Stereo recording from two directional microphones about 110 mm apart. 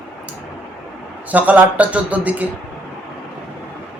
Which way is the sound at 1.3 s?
15° right (ahead or behind).